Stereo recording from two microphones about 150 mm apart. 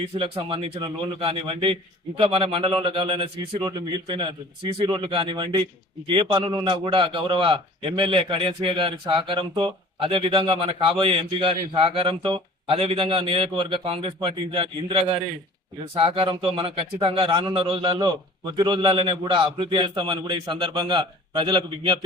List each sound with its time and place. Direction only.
0.0 s a man's voice: 35° right (ahead or behind)